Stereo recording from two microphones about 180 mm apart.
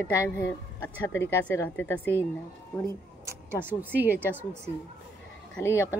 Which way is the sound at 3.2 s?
10° right (ahead or behind).